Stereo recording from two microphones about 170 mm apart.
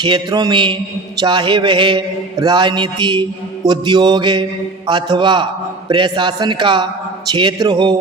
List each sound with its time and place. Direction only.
0.0 s mantra: 25° right (ahead or behind)